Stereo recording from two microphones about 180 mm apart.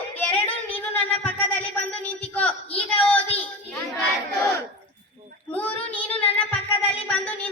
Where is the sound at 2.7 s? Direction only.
10° left (ahead or behind).